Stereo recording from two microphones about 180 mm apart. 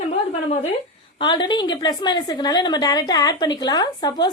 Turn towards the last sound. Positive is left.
turn(degrees=20)  # may be behind; listen again after turning